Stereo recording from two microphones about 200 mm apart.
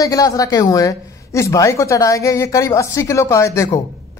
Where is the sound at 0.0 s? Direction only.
15° left (ahead or behind).